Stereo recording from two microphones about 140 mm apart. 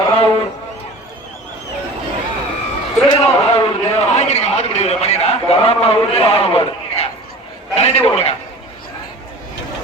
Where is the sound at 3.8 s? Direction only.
55° left (ahead or behind).